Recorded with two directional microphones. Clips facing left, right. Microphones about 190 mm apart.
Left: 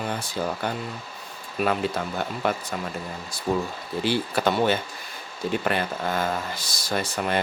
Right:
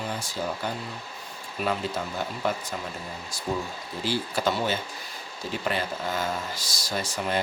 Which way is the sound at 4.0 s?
60° left (ahead or behind).